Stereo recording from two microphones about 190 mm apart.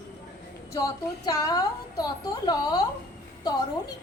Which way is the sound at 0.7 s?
15° left (ahead or behind).